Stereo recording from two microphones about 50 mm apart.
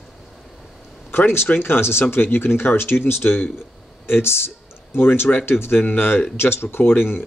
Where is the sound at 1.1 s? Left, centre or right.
Left.